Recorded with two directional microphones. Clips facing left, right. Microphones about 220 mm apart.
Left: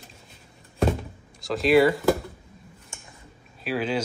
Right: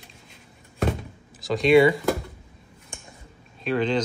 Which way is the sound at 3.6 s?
5° left (ahead or behind).